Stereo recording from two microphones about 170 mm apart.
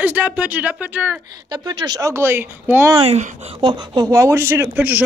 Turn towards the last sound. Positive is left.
turn(degrees=-10)  # may be behind; listen again after turning